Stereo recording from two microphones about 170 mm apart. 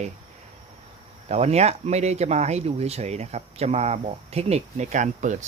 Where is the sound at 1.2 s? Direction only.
40° right (ahead or behind).